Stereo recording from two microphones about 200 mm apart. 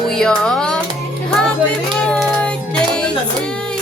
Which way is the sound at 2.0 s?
5° left (ahead or behind).